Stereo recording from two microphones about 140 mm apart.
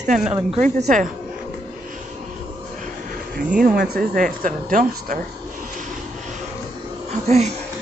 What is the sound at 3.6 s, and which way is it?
Speech, 85° right.